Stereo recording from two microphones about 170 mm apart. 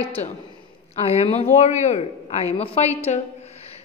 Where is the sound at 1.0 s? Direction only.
40° left (ahead or behind).